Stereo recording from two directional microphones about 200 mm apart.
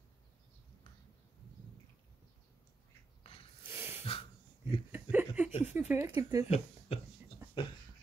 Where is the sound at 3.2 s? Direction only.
30° left (ahead or behind).